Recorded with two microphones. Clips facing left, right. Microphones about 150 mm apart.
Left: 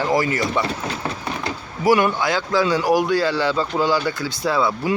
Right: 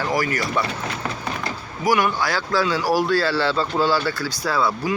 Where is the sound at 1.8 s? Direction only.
25° left (ahead or behind).